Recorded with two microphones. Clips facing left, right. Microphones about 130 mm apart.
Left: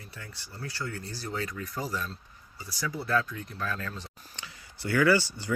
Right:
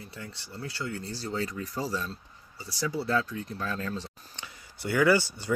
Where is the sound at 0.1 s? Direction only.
25° right (ahead or behind).